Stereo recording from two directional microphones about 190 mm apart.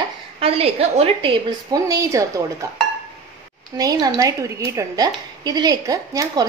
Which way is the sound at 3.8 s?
20° right (ahead or behind).